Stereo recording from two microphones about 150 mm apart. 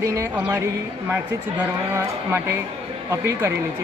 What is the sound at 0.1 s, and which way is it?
Speech, 20° right (ahead or behind).